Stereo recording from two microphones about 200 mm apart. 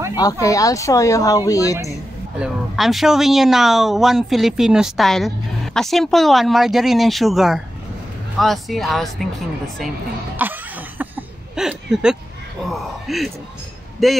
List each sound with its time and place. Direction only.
0.1 s speech: 20° left (ahead or behind)
1.9 s a woman's voice: centre (ahead or behind)
10.3 s a sound: 10° right (ahead or behind)
13.0 s a woman's voice: centre (ahead or behind)